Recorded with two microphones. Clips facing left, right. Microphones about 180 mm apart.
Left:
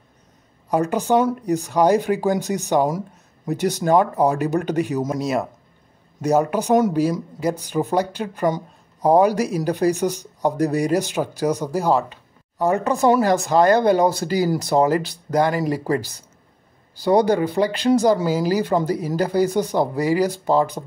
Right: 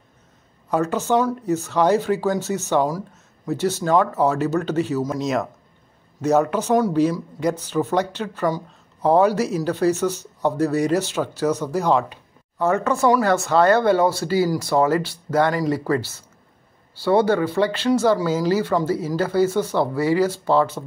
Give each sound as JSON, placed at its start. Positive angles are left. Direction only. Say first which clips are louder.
{"t": 0.7, "sound": "speech", "louder": "left 1 dB", "side_deg": 15}
{"t": 5.2, "sound": "speech", "louder": "even", "side_deg": 10}